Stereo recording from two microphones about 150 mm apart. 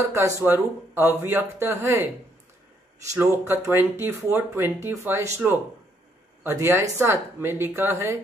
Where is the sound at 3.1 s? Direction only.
20° right (ahead or behind).